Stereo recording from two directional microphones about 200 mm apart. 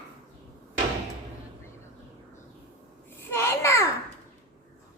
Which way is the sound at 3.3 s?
15° left (ahead or behind).